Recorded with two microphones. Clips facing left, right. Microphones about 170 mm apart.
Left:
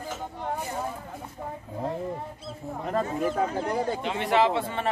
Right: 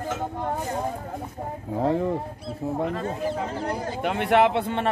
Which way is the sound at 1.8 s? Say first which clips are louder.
Right 8 dB; 90° right.